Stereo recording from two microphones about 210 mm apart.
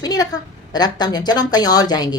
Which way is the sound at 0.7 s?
20° left (ahead or behind).